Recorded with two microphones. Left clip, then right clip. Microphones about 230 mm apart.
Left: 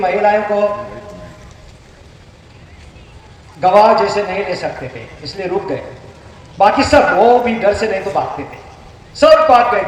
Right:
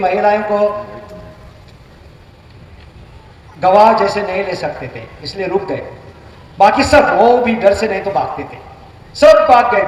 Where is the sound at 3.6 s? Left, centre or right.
Right.